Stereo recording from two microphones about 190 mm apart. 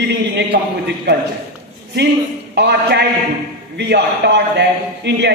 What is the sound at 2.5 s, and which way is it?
A man's voice, 60° right (ahead or behind).